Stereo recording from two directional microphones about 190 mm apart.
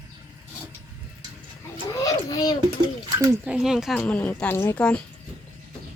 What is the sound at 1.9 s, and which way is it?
Children playing, 20° left (ahead or behind).